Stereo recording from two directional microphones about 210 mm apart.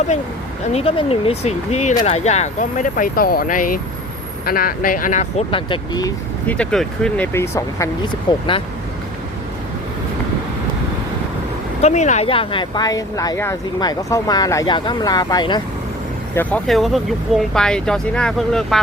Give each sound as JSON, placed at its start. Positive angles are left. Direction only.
{"t": 0.7, "sound": "speech", "side_deg": 30}
{"t": 6.6, "sound": "speech", "side_deg": 5}
{"t": 11.8, "sound": "speech", "side_deg": 35}
{"t": 16.3, "sound": "speech", "side_deg": 5}